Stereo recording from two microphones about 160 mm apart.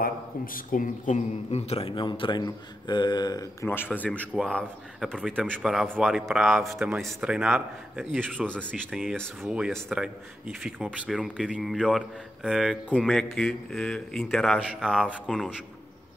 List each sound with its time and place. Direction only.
0.7 s speech: 55° left (ahead or behind); by 3.4 s 25° left (ahead or behind)
3.6 s speech: 15° left (ahead or behind)